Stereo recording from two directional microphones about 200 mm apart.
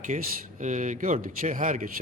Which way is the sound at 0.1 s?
30° right (ahead or behind).